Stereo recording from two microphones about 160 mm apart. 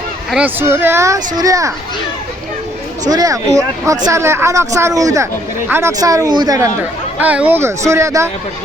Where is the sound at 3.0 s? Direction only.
25° right (ahead or behind).